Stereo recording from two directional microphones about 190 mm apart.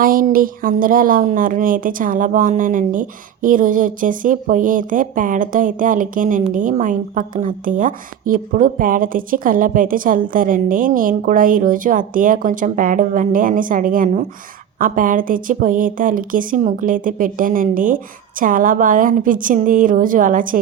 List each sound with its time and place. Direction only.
0.0 s a woman's voice: 45° right (ahead or behind)